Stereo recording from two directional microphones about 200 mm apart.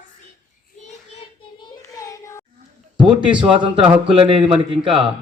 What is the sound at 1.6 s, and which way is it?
Child singing, 20° left (ahead or behind).